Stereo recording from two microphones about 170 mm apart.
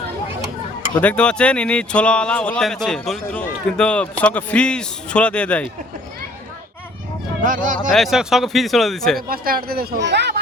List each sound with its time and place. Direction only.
1.0 s speech: 5° left (ahead or behind)
7.4 s speech: 50° right (ahead or behind)
7.9 s speech: centre (ahead or behind)
9.3 s speech: 60° right (ahead or behind); by 10.3 s 90° right